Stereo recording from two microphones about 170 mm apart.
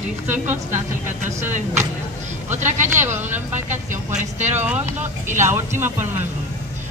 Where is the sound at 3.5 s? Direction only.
45° right (ahead or behind).